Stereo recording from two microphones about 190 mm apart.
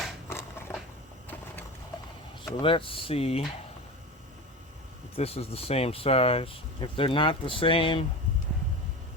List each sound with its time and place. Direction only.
0.3 s a sound: 15° left (ahead or behind)
2.6 s speech: 25° left (ahead or behind)
5.1 s speech: 30° left (ahead or behind)